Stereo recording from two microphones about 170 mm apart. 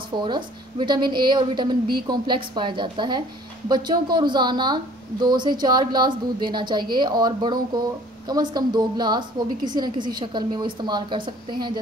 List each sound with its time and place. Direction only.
0.1 s a woman's voice: 25° right (ahead or behind)